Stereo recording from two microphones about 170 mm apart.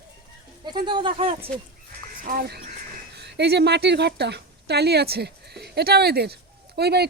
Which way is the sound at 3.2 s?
80° right.